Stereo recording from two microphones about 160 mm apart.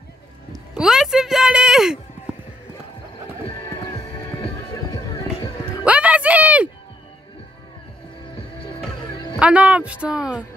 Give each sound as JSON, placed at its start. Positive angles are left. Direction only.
{"t": 0.7, "sound": "a woman's voice", "side_deg": -5}
{"t": 3.4, "sound": "music", "side_deg": 30}
{"t": 5.9, "sound": "a sound", "side_deg": -10}
{"t": 9.4, "sound": "speech", "side_deg": -10}